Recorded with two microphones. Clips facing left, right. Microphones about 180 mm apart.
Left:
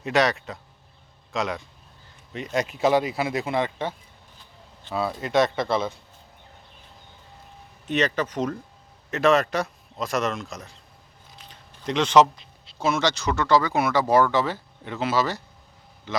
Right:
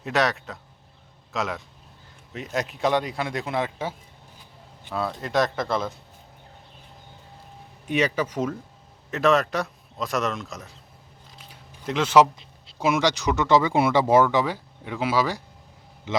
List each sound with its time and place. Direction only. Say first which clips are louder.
0.0 s speech: left 2 dB; centre (ahead or behind)
4.9 s speech: left 2 dB; centre (ahead or behind)
7.9 s speech: even; 10° right (ahead or behind)
11.4 s a sound: left 1 dB; 5° right (ahead or behind)
12.8 s speech: right 1 dB; 15° right (ahead or behind)